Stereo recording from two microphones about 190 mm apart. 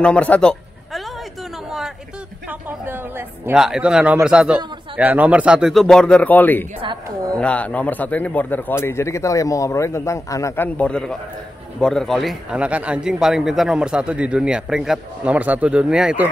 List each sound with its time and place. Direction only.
0.0 s a sound: 5° left (ahead or behind)
2.8 s a man's voice: 10° right (ahead or behind); by 6.7 s 10° left (ahead or behind)
6.8 s a woman's voice: 25° right (ahead or behind)
7.3 s a man's voice: 5° left (ahead or behind)